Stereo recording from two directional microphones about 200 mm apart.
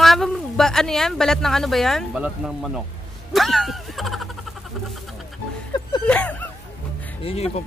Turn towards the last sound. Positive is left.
turn(degrees=30)  # may be behind; listen again after turning